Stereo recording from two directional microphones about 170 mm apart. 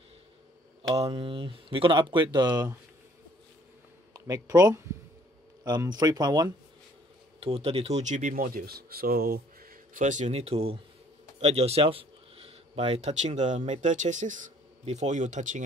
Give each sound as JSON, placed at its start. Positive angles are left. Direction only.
{"t": 0.9, "sound": "speech", "side_deg": -35}
{"t": 4.1, "sound": "speech", "side_deg": -20}
{"t": 7.3, "sound": "speech", "side_deg": -35}